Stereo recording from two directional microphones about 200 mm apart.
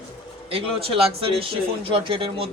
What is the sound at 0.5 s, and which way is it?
A man's voice, 25° right (ahead or behind).